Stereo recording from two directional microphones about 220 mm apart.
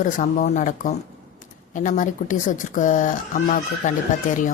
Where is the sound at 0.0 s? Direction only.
35° left (ahead or behind).